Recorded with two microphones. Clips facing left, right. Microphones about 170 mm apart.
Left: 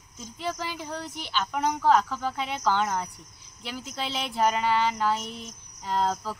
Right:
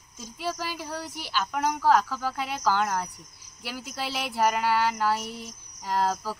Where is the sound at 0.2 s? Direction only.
10° right (ahead or behind).